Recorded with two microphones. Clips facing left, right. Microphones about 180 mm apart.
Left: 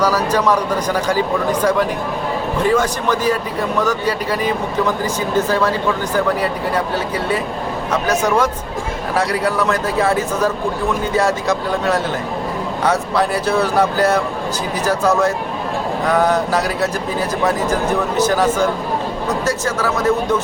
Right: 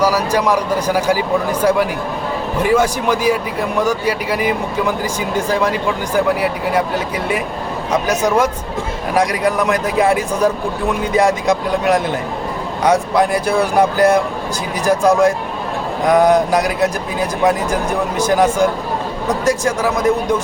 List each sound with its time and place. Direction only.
0.0 s speech: 10° right (ahead or behind)
18.2 s speech: 10° right (ahead or behind)